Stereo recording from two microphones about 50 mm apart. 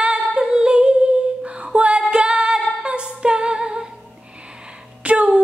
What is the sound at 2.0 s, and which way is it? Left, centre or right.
Music, centre.